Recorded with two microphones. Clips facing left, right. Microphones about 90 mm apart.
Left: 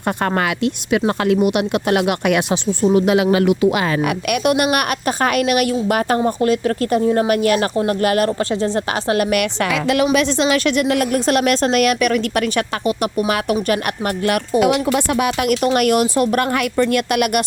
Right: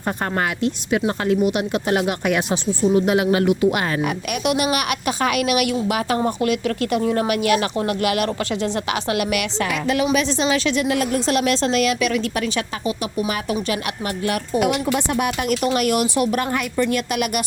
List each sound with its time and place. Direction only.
0.2 s speech: 90° left
4.4 s a woman's voice: 55° left (ahead or behind)
6.2 s speech: 35° left (ahead or behind); by 9.6 s 50° left (ahead or behind)
9.6 s speech: 85° left
10.1 s a woman's voice: 65° left (ahead or behind); by 15.5 s 85° left
15.6 s a woman's voice: 55° left (ahead or behind)
16.4 s a woman's voice: 60° left (ahead or behind)